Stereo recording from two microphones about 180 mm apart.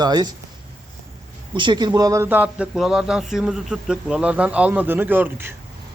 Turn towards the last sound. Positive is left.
turn(degrees=-10)  # may be behind; listen again after turning